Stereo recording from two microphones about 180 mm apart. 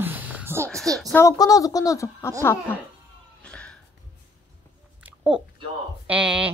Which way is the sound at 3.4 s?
5° left (ahead or behind).